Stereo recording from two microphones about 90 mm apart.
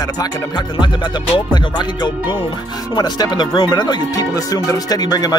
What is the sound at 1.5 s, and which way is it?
Speech, 55° left (ahead or behind).